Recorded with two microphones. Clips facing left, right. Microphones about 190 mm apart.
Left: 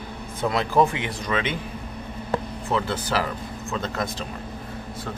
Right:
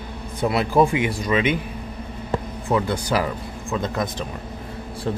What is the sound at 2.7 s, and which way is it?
Speech, 15° right (ahead or behind).